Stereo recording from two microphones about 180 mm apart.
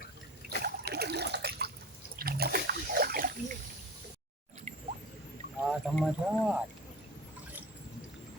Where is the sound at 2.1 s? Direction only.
55° right (ahead or behind).